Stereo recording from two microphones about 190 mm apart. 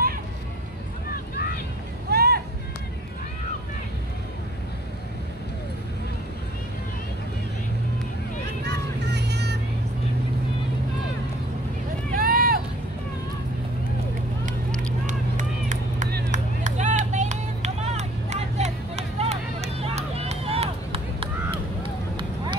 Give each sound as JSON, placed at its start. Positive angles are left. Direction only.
{"t": 2.0, "sound": "vehicle", "side_deg": -55}
{"t": 8.6, "sound": "vehicle", "side_deg": -65}
{"t": 12.1, "sound": "vehicle", "side_deg": -50}
{"t": 15.0, "sound": "a sound", "side_deg": -45}
{"t": 16.3, "sound": "vehicle", "side_deg": -40}
{"t": 22.1, "sound": "run", "side_deg": -25}